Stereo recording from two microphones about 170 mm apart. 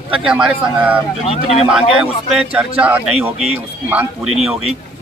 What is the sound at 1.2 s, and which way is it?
Speech, 35° left (ahead or behind).